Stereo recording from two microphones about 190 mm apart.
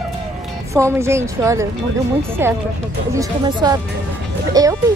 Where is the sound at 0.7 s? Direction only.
15° right (ahead or behind).